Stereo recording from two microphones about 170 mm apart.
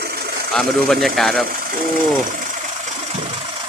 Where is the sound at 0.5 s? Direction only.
Centre (ahead or behind).